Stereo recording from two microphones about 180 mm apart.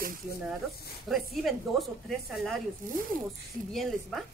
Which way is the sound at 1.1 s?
Centre (ahead or behind).